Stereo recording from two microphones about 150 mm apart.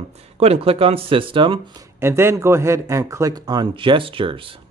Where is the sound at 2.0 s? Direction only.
15° right (ahead or behind); by 4.4 s 35° right (ahead or behind).